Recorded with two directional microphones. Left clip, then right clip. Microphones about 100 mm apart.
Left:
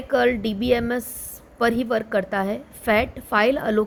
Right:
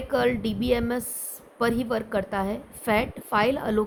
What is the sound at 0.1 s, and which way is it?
A woman's voice, 30° left (ahead or behind).